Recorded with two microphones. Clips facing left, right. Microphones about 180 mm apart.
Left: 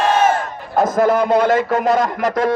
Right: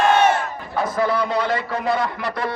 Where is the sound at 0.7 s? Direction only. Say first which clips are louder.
Left 7 dB; 45° left (ahead or behind).